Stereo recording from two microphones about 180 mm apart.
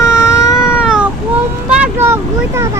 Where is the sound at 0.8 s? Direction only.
5° right (ahead or behind).